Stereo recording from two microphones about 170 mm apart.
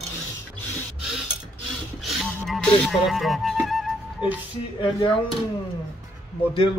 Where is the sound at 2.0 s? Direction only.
Centre (ahead or behind).